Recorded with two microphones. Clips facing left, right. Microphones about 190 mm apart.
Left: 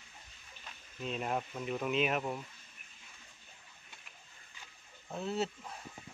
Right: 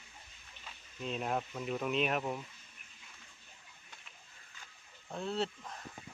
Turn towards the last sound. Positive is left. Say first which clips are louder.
# left 1 dB
turn(degrees=5)  # may be behind; listen again after turning